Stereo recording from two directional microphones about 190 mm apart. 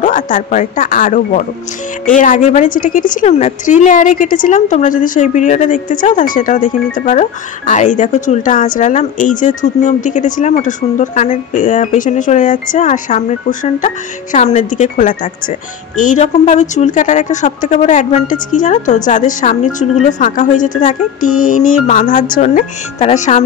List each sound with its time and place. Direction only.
0.0 s a woman's voice: 45° left (ahead or behind)